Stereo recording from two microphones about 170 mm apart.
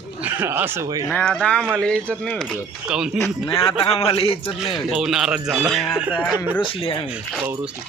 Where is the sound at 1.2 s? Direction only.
5° left (ahead or behind).